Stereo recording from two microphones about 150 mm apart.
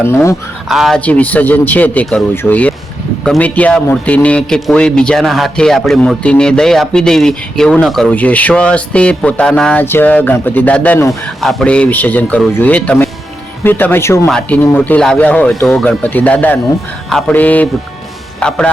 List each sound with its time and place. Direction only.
0.0 s speech: 15° left (ahead or behind)
0.7 s a man's voice: centre (ahead or behind); by 14.2 s 15° left (ahead or behind)
14.3 s a man's voice: 5° left (ahead or behind)